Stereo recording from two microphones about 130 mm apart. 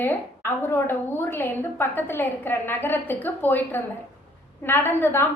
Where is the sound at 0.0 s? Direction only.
15° left (ahead or behind).